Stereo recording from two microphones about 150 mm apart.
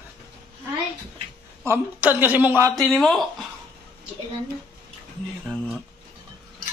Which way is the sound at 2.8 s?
Centre (ahead or behind).